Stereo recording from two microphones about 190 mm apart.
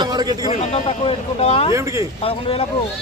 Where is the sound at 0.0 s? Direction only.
20° right (ahead or behind).